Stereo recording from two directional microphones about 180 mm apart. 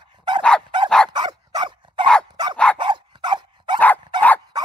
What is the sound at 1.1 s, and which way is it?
Dog, 20° right (ahead or behind).